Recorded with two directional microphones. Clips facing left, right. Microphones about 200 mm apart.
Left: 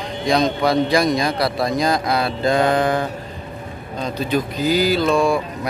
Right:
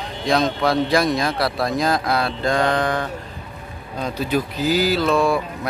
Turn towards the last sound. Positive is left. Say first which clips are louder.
# left 1 dB
turn(degrees=0)  # may be behind; listen again after turning